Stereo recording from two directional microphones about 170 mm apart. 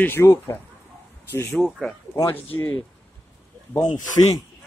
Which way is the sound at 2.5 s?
15° left (ahead or behind).